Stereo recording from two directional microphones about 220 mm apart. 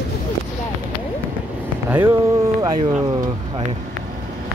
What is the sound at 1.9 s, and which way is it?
Speech, 10° right (ahead or behind).